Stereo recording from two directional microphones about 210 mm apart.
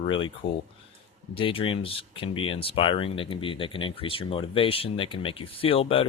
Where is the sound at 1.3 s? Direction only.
25° left (ahead or behind).